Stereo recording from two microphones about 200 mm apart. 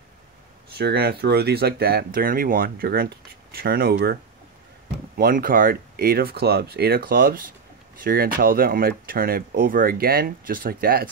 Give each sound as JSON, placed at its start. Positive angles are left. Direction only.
{"t": 0.7, "sound": "speech", "side_deg": -50}